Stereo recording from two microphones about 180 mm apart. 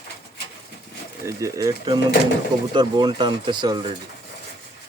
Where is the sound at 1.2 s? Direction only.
20° right (ahead or behind).